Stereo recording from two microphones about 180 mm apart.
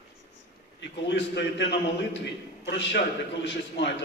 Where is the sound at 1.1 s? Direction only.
75° left (ahead or behind).